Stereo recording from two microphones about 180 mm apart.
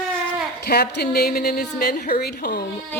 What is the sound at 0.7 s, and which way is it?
A woman's voice, 60° left (ahead or behind).